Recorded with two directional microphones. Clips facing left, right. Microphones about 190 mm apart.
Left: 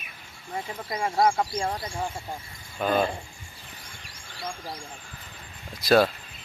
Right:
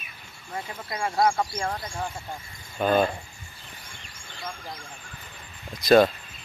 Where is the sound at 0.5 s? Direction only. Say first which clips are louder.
Left 2 dB; 10° left (ahead or behind).